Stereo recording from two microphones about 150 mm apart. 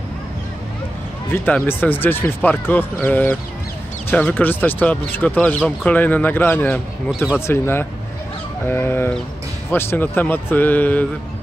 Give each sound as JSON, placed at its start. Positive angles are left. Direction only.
{"t": 1.3, "sound": "speech", "side_deg": 15}